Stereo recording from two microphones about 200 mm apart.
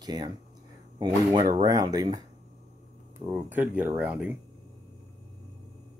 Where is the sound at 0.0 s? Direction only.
20° right (ahead or behind).